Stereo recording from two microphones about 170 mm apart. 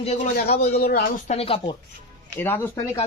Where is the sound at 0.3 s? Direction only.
70° left (ahead or behind).